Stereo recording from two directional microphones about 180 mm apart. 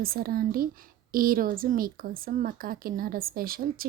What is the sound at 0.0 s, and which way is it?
Speech, 55° right (ahead or behind).